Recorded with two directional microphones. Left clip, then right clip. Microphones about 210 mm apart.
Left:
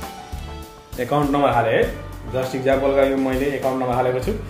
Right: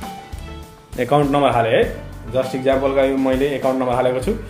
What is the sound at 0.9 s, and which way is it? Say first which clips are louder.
Speech: right 4 dB; 30° right (ahead or behind).